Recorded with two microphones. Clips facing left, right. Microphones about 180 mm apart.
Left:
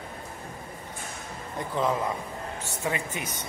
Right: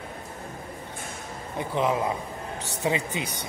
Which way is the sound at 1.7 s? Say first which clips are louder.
Right 2 dB; 15° right (ahead or behind).